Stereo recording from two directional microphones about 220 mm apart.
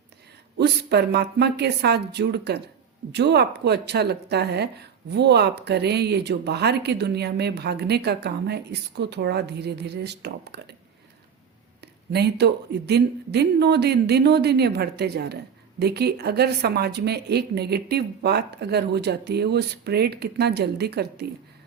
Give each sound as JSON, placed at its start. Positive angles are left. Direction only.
{"t": 0.6, "sound": "speech", "side_deg": -50}
{"t": 12.1, "sound": "speech", "side_deg": -50}